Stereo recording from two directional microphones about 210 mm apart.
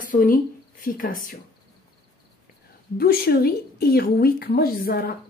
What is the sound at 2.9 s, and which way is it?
A woman's voice, 45° left (ahead or behind).